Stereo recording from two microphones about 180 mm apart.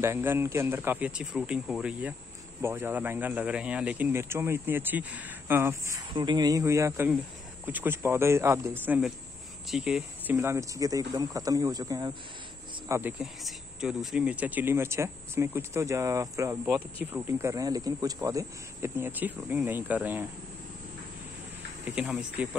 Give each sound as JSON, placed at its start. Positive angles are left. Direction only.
{"t": 0.0, "sound": "speech", "side_deg": -15}
{"t": 10.3, "sound": "speech", "side_deg": -15}
{"t": 13.2, "sound": "speech", "side_deg": 0}
{"t": 21.8, "sound": "speech", "side_deg": -5}